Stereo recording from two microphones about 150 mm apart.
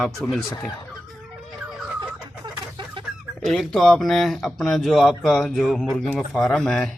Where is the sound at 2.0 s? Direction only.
30° right (ahead or behind).